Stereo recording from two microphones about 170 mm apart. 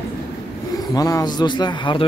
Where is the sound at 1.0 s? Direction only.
20° left (ahead or behind).